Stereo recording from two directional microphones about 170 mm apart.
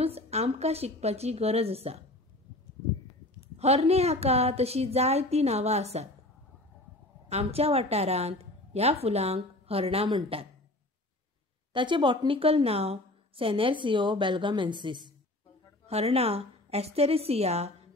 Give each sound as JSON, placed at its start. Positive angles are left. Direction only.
{"t": 0.0, "sound": "a woman's voice", "side_deg": -35}
{"t": 3.5, "sound": "a woman's voice", "side_deg": -40}
{"t": 7.2, "sound": "a woman's voice", "side_deg": -35}
{"t": 11.7, "sound": "a woman's voice", "side_deg": -30}